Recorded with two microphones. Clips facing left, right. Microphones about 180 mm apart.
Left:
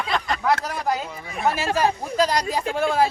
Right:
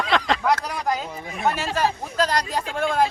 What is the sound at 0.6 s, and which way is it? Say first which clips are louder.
Speech: left 1 dB; 5° left (ahead or behind).